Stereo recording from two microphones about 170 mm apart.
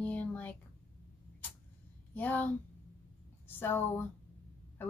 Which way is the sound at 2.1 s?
10° left (ahead or behind).